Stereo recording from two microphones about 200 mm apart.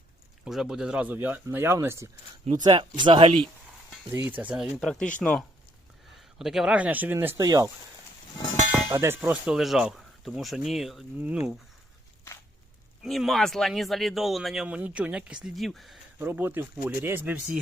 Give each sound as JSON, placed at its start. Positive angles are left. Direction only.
{"t": 0.4, "sound": "speech", "side_deg": 0}
{"t": 4.3, "sound": "speech", "side_deg": -10}
{"t": 8.9, "sound": "speech", "side_deg": -15}
{"t": 13.0, "sound": "speech", "side_deg": 0}